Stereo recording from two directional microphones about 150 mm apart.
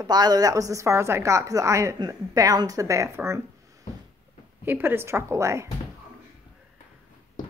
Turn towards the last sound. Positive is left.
turn(degrees=-20)  # may be behind; listen again after turning